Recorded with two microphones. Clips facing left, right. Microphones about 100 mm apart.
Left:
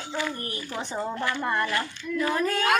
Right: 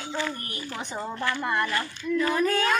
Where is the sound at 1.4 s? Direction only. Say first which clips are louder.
Even; centre (ahead or behind).